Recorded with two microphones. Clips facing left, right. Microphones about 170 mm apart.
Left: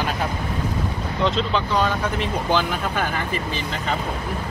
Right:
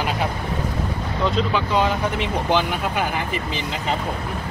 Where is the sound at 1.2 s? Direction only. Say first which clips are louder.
Even; 10° right (ahead or behind).